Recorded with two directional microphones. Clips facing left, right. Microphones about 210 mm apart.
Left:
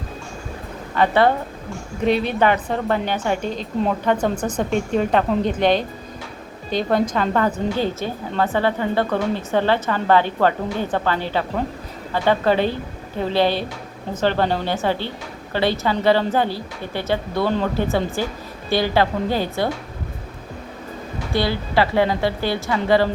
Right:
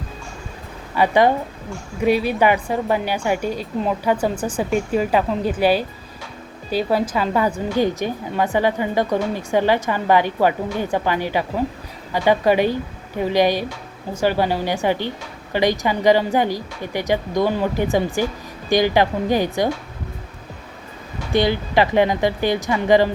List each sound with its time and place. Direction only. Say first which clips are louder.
0.9 s a woman's voice: right 1 dB; 10° right (ahead or behind)
21.3 s a woman's voice: right 3 dB; 20° right (ahead or behind)